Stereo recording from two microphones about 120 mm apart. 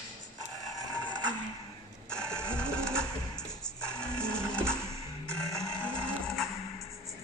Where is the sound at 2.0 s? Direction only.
5° left (ahead or behind).